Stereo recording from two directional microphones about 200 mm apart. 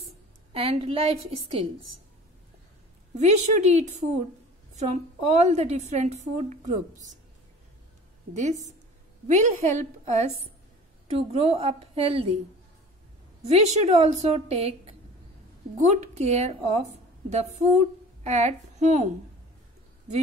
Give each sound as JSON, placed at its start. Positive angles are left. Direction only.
{"t": 0.5, "sound": "a woman's voice", "side_deg": -30}
{"t": 3.2, "sound": "a woman's voice", "side_deg": -35}
{"t": 8.3, "sound": "a woman's voice", "side_deg": -35}
{"t": 13.5, "sound": "a woman's voice", "side_deg": -35}